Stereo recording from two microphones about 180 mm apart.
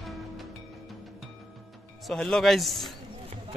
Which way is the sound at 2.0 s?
5° left (ahead or behind).